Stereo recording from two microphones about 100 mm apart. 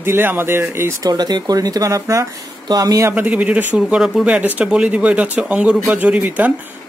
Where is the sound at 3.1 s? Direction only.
15° right (ahead or behind).